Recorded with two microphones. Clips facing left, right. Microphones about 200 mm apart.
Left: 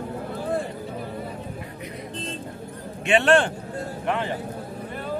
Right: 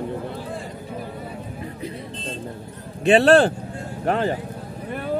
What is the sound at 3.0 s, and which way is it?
Speech, 35° right (ahead or behind).